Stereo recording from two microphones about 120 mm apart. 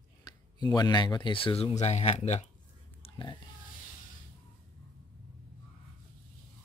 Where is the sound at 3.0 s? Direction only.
45° left (ahead or behind).